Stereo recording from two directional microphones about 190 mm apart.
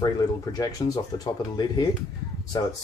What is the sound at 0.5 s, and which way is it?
Speech, 20° left (ahead or behind).